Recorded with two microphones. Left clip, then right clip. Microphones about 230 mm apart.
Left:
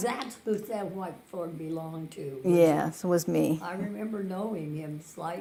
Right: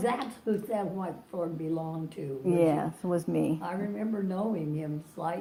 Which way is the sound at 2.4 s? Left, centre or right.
Left.